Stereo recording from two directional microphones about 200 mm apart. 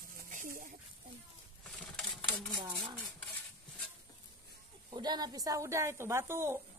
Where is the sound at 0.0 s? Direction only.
40° right (ahead or behind).